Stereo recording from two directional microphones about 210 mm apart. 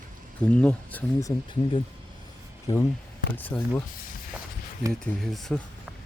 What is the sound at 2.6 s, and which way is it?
Speech, 15° left (ahead or behind).